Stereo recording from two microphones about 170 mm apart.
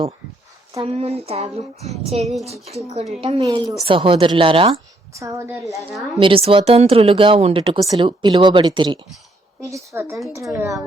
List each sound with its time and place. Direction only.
0.8 s speech: 35° right (ahead or behind)
3.4 s speech: 20° right (ahead or behind)
3.8 s speech: 30° right (ahead or behind)
5.1 s speech: 20° right (ahead or behind)
6.1 s speech: 30° right (ahead or behind)